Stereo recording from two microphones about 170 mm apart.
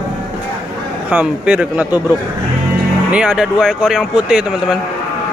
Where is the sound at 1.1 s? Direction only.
5° right (ahead or behind).